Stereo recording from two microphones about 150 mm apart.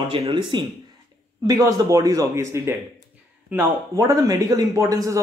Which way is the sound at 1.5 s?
25° right (ahead or behind).